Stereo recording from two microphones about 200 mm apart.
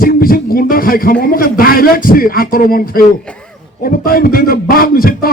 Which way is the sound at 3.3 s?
5° left (ahead or behind).